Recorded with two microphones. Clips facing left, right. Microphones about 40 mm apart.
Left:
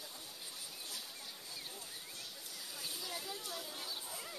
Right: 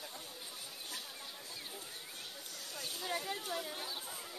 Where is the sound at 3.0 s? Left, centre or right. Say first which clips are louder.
Right 9 dB; right.